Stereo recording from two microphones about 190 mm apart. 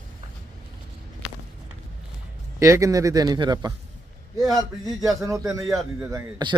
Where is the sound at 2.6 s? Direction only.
15° right (ahead or behind).